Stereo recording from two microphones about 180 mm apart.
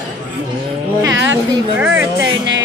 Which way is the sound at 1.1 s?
90° right.